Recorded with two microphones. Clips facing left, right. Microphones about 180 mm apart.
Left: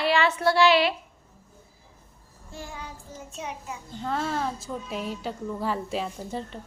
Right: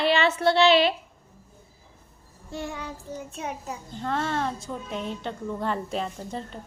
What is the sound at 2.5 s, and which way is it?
Child singing, 75° right (ahead or behind).